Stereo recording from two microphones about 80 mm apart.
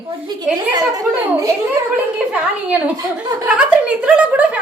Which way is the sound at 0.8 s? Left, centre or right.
Right.